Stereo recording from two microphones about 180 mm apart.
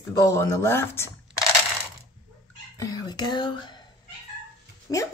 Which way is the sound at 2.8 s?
20° left (ahead or behind).